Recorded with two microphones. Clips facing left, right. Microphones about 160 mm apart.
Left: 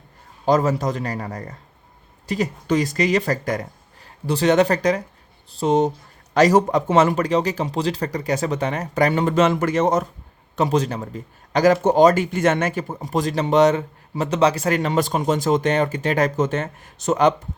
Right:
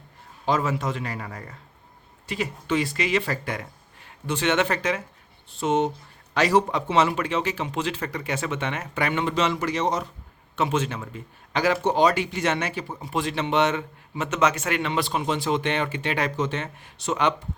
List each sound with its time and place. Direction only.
0.4 s a man's voice: 40° left (ahead or behind)
10.5 s a man's voice: 40° left (ahead or behind)